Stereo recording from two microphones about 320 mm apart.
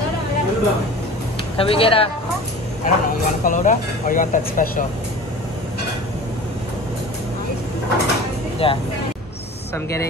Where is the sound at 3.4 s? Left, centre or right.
Left.